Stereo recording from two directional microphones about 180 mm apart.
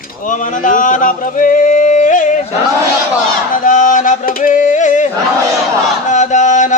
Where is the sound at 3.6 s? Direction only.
45° left (ahead or behind).